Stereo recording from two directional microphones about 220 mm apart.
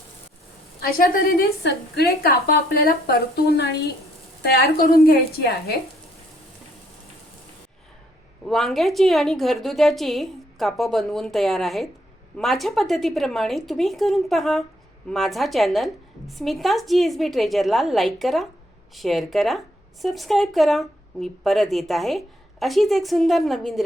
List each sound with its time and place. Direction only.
0.8 s a woman's voice: 40° left (ahead or behind)
8.4 s a woman's voice: centre (ahead or behind)